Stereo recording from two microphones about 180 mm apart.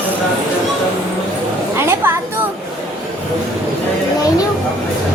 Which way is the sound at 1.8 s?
15° right (ahead or behind).